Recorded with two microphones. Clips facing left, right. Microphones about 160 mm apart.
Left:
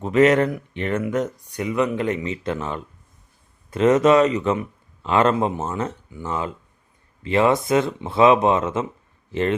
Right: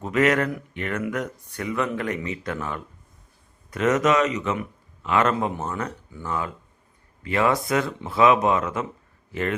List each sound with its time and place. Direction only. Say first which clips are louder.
0.0 s speech: left 5 dB; 25° left (ahead or behind)